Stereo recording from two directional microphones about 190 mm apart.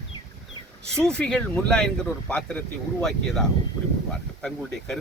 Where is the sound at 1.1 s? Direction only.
5° left (ahead or behind).